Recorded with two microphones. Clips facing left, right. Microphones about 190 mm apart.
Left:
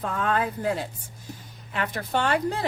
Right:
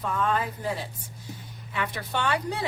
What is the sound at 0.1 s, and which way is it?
Speech, 60° left (ahead or behind).